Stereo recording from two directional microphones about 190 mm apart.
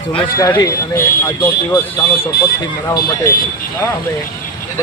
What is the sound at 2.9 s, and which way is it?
Speech, 20° left (ahead or behind).